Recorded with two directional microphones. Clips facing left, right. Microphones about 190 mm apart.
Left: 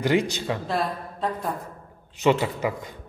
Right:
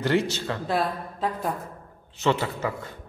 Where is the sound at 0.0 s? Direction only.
15° left (ahead or behind).